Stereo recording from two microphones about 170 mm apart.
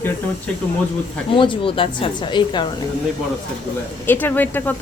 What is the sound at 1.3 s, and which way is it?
Speech, 30° left (ahead or behind).